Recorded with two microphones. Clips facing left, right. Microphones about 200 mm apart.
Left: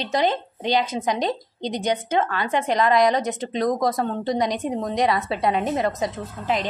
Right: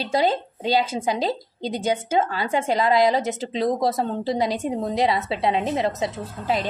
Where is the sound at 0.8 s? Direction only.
30° right (ahead or behind).